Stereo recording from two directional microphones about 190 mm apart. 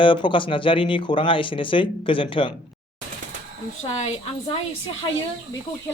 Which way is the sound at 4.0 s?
35° left (ahead or behind).